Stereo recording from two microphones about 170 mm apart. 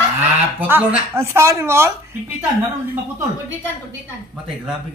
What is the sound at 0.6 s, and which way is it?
Speech, 10° right (ahead or behind).